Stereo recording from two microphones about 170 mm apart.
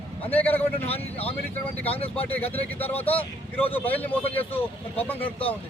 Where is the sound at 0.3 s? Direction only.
10° left (ahead or behind).